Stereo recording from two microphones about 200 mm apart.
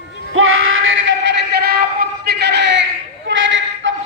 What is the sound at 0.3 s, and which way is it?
Music, 90° right.